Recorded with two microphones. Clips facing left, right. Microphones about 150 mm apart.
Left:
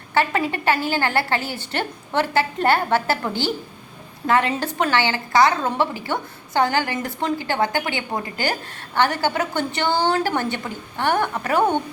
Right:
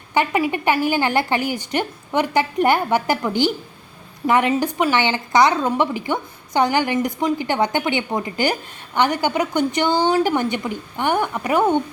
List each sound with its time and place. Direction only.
0.1 s a woman's voice: 15° right (ahead or behind)